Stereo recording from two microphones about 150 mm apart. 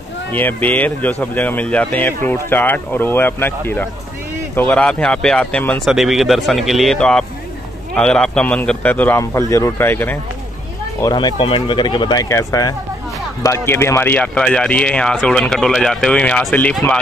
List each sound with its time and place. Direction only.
0.3 s speech: 10° left (ahead or behind)
5.9 s speech: centre (ahead or behind); by 10.1 s 15° left (ahead or behind)
11.0 s speech: 25° left (ahead or behind); by 17.0 s 5° left (ahead or behind)